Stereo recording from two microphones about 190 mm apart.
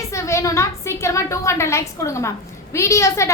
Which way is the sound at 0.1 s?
15° left (ahead or behind).